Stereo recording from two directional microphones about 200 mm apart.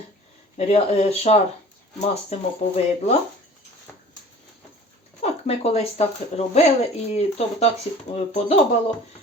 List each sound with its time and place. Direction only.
0.5 s speech: 30° left (ahead or behind)
5.2 s speech: 30° left (ahead or behind)